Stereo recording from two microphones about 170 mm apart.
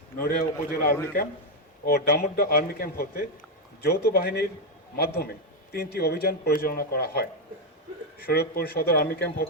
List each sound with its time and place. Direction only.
0.2 s speech: 60° left (ahead or behind)